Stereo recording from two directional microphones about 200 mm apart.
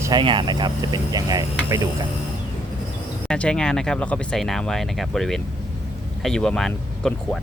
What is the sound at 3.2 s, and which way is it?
Speech, 5° left (ahead or behind).